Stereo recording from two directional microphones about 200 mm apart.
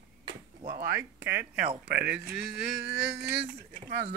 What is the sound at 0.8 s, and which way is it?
Speech, 10° right (ahead or behind).